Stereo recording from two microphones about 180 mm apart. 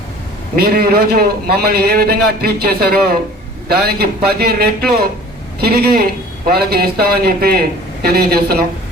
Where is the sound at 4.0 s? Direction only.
60° right (ahead or behind).